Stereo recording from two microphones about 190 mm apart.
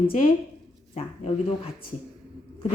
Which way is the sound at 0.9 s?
30° left (ahead or behind).